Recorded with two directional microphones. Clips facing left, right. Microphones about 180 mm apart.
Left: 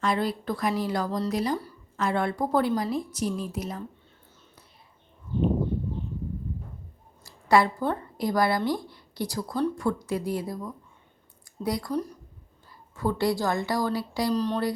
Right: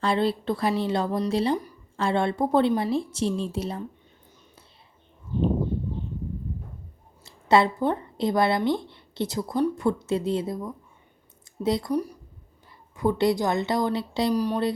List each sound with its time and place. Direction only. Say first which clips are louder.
0.0 s a woman's voice: right 3 dB; 30° right (ahead or behind)
7.3 s a woman's voice: right 1 dB; 25° right (ahead or behind)
13.0 s a woman's voice: right 3 dB; 20° right (ahead or behind)
14.3 s speech: right 2 dB; 10° right (ahead or behind)